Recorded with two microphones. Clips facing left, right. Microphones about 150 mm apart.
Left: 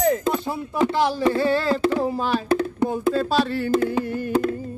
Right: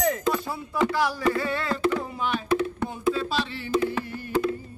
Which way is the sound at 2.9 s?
40° left (ahead or behind).